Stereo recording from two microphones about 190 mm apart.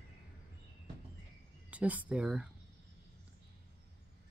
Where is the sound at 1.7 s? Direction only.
5° right (ahead or behind).